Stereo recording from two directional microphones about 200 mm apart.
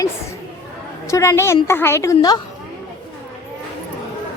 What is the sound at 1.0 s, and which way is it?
A woman's voice, 15° left (ahead or behind).